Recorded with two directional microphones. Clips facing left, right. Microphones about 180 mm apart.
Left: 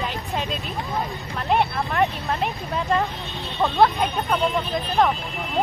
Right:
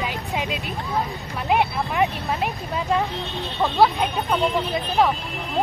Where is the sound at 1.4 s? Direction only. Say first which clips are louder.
Even; 5° right (ahead or behind).